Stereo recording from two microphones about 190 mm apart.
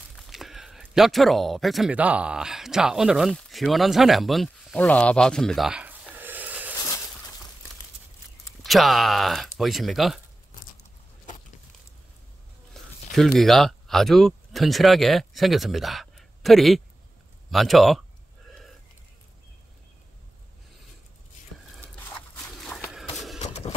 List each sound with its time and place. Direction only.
0.1 s speech: centre (ahead or behind)
8.6 s speech: centre (ahead or behind)
12.7 s zipper: centre (ahead or behind)
13.1 s speech: centre (ahead or behind)
18.5 s a sound: centre (ahead or behind)
22.6 s walk: centre (ahead or behind)
23.4 s vehicle: 35° left (ahead or behind)